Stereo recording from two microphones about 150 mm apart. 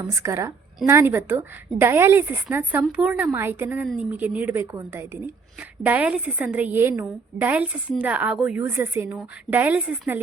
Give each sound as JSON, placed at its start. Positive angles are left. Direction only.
{"t": 0.2, "sound": "a woman's voice", "side_deg": -20}